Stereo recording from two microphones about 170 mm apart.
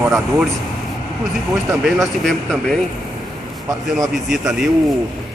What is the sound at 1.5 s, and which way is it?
Speech, centre (ahead or behind).